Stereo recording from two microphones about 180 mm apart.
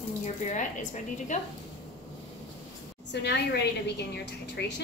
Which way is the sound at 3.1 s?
70° left (ahead or behind).